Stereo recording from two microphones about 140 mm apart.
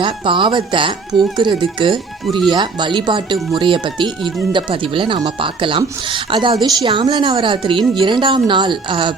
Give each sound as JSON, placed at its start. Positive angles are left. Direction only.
{"t": 0.0, "sound": "speech", "side_deg": -35}